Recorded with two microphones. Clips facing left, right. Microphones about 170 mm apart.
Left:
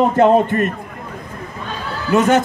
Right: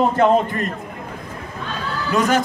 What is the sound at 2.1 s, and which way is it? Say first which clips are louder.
Speech: left 5 dB; 25° left (ahead or behind).